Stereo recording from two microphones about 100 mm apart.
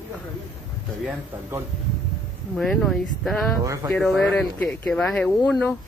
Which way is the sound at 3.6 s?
30° right (ahead or behind).